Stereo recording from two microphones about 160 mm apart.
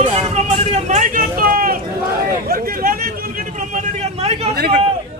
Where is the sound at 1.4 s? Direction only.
65° right (ahead or behind).